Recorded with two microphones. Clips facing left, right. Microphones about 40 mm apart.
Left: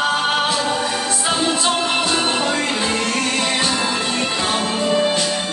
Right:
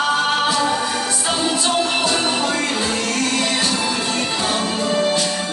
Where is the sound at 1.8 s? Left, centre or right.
Left.